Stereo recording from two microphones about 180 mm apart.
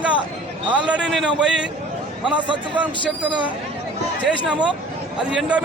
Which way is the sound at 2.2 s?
25° right (ahead or behind).